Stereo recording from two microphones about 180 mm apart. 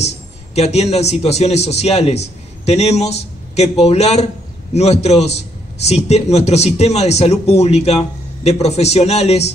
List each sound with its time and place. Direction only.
0.6 s a man's voice: 35° left (ahead or behind)